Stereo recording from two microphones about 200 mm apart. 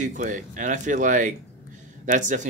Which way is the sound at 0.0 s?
40° right (ahead or behind).